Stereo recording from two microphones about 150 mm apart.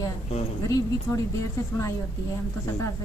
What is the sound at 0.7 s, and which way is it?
Speech, 20° left (ahead or behind).